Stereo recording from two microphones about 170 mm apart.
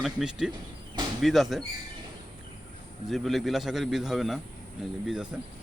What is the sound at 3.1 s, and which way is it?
Speech, centre (ahead or behind).